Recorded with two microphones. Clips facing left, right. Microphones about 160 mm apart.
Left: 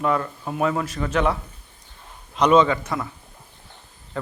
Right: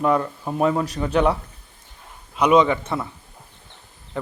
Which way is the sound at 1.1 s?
Centre (ahead or behind).